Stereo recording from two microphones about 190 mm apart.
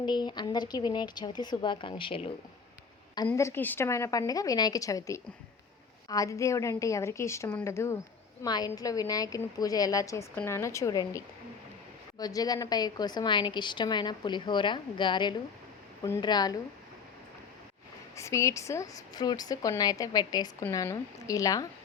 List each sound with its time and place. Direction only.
0.0 s a woman's voice: 25° left (ahead or behind)
3.2 s a woman's voice: 15° left (ahead or behind)
12.2 s a woman's voice: 20° left (ahead or behind)
18.2 s a woman's voice: 15° left (ahead or behind)